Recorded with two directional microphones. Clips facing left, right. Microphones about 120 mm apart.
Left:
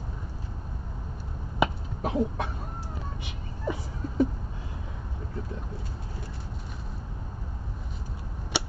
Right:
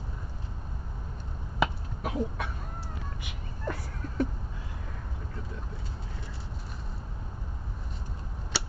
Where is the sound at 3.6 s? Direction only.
5° left (ahead or behind).